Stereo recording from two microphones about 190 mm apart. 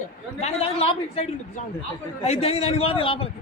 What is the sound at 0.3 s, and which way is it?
Speech, 30° left (ahead or behind).